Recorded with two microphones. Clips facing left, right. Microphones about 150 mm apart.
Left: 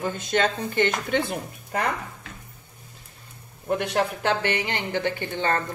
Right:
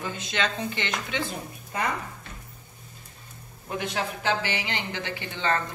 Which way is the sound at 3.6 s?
60° left (ahead or behind).